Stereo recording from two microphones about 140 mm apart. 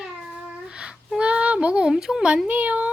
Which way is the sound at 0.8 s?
5° right (ahead or behind).